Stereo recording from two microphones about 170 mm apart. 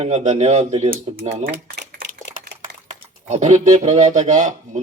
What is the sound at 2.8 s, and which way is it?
Speech, 45° right (ahead or behind).